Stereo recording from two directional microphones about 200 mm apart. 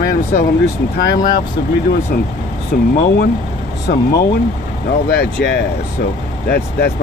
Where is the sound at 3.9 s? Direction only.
50° left (ahead or behind).